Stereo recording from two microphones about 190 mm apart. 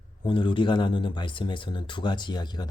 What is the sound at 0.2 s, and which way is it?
Speech, 25° left (ahead or behind).